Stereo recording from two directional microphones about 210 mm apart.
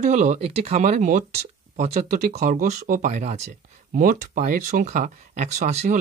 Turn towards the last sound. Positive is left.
turn(degrees=-35)  # may be behind; listen again after turning